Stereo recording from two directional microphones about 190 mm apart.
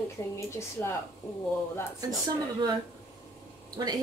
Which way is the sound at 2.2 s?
20° right (ahead or behind).